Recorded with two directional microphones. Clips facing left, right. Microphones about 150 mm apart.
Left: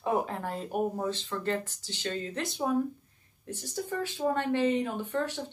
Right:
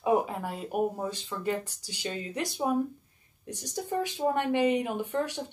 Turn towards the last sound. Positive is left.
turn(degrees=-15)  # may be behind; listen again after turning